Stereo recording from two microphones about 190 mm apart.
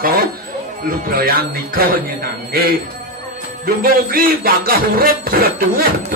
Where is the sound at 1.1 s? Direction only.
50° right (ahead or behind).